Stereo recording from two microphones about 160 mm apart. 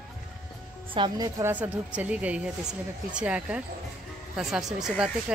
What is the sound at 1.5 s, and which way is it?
Speech, 10° right (ahead or behind).